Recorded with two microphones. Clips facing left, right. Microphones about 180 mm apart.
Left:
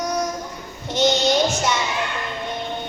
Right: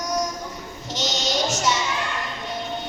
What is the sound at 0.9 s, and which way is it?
Music, 55° left (ahead or behind).